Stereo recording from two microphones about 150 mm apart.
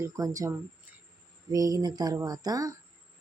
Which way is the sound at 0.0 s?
20° right (ahead or behind).